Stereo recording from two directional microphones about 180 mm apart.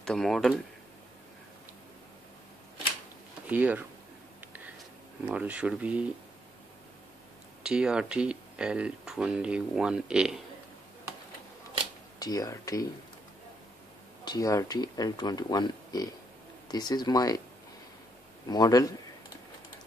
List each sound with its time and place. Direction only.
0.0 s speech: 5° left (ahead or behind)
3.4 s speech: 10° right (ahead or behind)
5.2 s speech: 5° right (ahead or behind)
7.6 s speech: 5° right (ahead or behind)
12.2 s speech: 20° left (ahead or behind)
14.2 s speech: 20° left (ahead or behind)
18.5 s speech: 20° left (ahead or behind)